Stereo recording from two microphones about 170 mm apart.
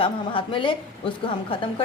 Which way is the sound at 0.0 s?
30° left (ahead or behind).